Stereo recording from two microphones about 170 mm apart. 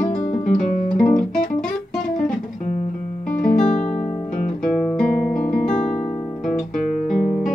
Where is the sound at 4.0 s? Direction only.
50° left (ahead or behind).